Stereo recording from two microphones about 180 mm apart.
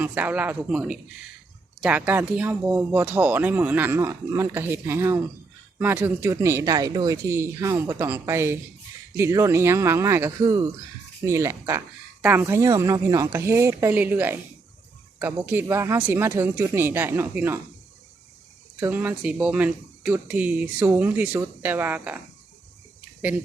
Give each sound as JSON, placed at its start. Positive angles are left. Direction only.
{"t": 0.0, "sound": "speech", "side_deg": -10}
{"t": 18.8, "sound": "speech", "side_deg": -10}